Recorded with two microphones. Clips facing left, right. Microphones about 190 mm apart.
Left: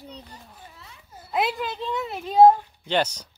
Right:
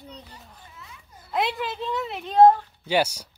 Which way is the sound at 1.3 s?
Centre (ahead or behind).